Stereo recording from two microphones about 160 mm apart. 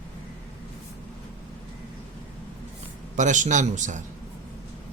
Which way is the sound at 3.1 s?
50° right (ahead or behind).